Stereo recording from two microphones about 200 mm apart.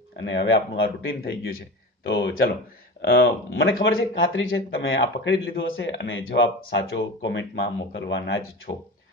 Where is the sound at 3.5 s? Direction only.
75° left (ahead or behind); by 8.4 s 60° left (ahead or behind).